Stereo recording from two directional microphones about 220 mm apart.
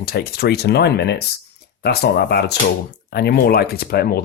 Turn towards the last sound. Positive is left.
turn(degrees=45)  # may be behind; listen again after turning